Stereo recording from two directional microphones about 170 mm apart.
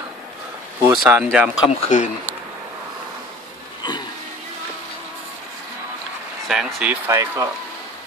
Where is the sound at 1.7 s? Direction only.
45° left (ahead or behind).